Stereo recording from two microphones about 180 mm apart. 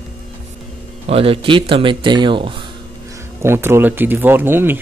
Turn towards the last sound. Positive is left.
turn(degrees=-10)  # may be behind; listen again after turning